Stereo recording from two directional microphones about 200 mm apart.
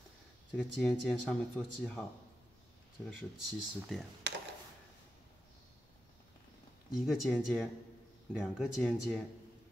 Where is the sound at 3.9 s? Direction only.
Centre (ahead or behind).